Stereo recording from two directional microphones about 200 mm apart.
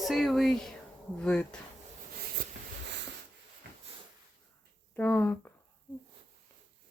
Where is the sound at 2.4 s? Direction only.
45° right (ahead or behind).